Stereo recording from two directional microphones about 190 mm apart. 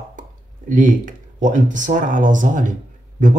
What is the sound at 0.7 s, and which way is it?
Speech, 45° right (ahead or behind).